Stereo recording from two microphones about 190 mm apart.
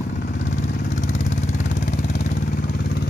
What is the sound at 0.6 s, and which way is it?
Vehicle, 65° left (ahead or behind).